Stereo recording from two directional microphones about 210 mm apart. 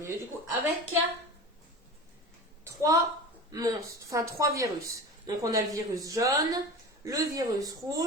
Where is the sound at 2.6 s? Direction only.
15° right (ahead or behind).